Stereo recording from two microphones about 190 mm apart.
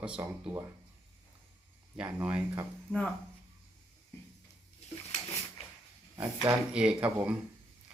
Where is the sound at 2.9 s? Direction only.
5° left (ahead or behind).